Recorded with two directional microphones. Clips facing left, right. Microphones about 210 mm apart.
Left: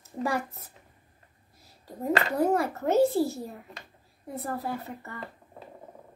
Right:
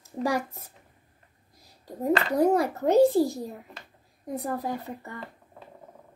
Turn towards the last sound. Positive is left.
turn(degrees=-15)  # may be behind; listen again after turning